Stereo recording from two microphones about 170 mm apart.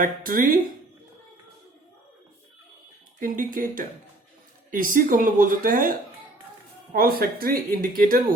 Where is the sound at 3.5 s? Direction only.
55° right (ahead or behind).